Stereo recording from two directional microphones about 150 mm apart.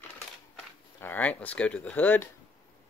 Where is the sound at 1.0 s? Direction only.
10° left (ahead or behind).